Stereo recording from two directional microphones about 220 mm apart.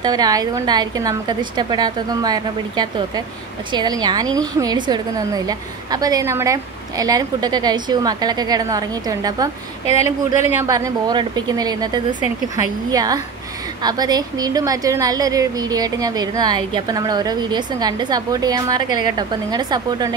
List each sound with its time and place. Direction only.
0.0 s a woman's voice: 15° right (ahead or behind)